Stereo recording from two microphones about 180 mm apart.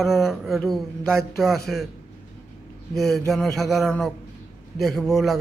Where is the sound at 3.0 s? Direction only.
Centre (ahead or behind).